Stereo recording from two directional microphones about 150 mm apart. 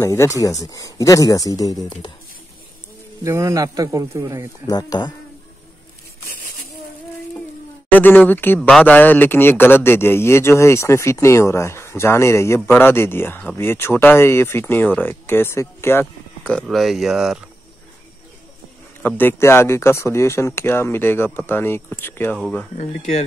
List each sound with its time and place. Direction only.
0.0 s speech: 20° left (ahead or behind)
3.3 s speech: 20° right (ahead or behind)
4.6 s speech: 25° left (ahead or behind)
7.9 s a man's voice: 10° left (ahead or behind)
8.5 s a man's voice: centre (ahead or behind)
16.6 s speech: centre (ahead or behind)
19.0 s a man's voice: 15° left (ahead or behind)